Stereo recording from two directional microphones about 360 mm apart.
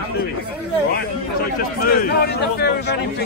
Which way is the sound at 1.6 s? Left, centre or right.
Left.